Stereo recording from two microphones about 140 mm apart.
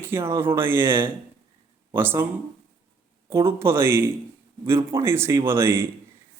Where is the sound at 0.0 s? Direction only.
20° right (ahead or behind).